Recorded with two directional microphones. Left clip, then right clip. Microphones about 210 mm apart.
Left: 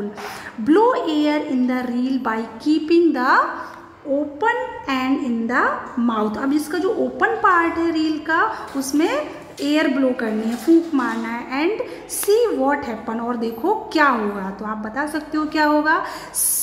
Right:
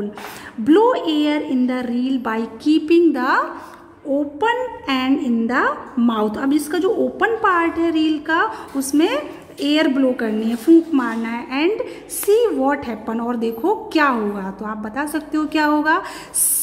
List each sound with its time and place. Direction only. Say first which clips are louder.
0.7 s a woman's voice: right 1 dB; 20° right (ahead or behind)